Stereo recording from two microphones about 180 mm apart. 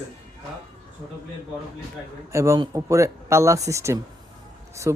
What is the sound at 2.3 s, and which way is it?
Speech, 15° right (ahead or behind).